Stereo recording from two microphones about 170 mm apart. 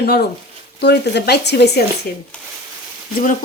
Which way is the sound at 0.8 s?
80° left.